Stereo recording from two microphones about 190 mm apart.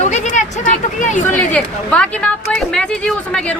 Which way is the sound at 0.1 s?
40° left (ahead or behind).